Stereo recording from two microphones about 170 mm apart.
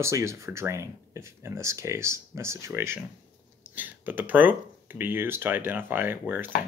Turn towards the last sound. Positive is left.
turn(degrees=-10)  # may be behind; listen again after turning